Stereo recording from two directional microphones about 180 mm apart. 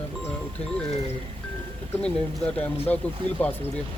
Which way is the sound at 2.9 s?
10° left (ahead or behind).